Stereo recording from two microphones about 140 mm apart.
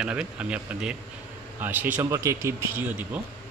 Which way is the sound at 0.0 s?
5° right (ahead or behind).